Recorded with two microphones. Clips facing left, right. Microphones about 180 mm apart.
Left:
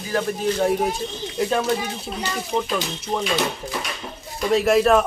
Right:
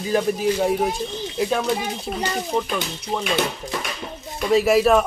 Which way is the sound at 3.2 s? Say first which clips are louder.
Right 1 dB; 55° right (ahead or behind).